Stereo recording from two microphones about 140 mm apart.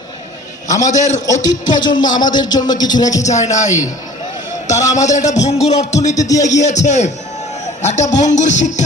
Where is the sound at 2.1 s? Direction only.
30° left (ahead or behind).